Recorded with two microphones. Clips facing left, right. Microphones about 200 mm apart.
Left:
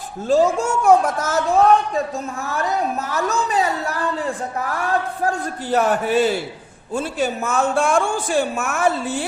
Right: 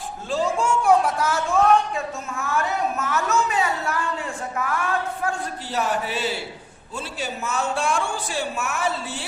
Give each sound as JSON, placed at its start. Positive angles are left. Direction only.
{"t": 0.3, "sound": "speech", "side_deg": 45}
{"t": 5.7, "sound": "a man's voice", "side_deg": 50}